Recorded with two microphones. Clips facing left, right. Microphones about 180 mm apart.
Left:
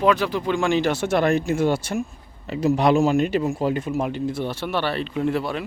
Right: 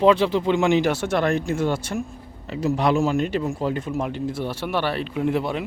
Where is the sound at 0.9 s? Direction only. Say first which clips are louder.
Left 2 dB; 5° left (ahead or behind).